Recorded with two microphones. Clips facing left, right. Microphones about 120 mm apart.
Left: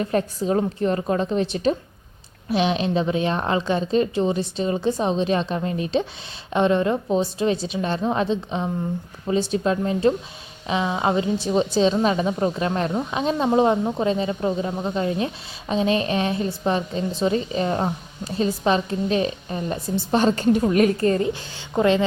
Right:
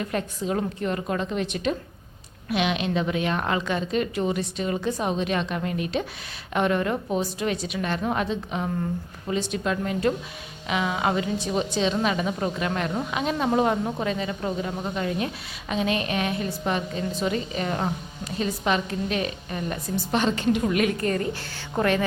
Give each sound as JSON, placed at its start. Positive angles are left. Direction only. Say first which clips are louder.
{"t": 0.0, "sound": "a woman's voice", "louder": "left 5 dB", "side_deg": 35}